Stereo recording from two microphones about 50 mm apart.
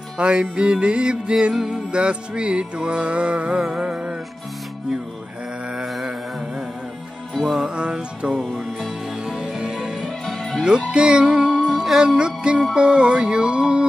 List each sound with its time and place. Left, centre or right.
0.2 s music: centre
7.3 s music: centre
7.7 s music: centre
8.3 s music: centre
9.2 s music: centre
10.0 s music: centre
10.9 s music: centre